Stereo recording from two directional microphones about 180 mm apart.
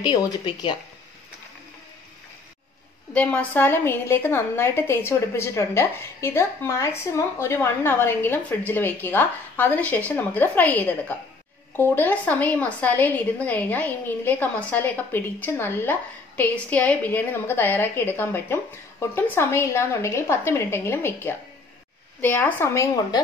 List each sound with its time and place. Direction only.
0.0 s speech: 25° left (ahead or behind)
3.1 s a woman's voice: 5° left (ahead or behind)